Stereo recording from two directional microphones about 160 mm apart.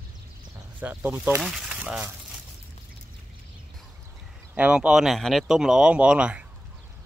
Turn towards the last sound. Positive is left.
turn(degrees=-5)  # may be behind; listen again after turning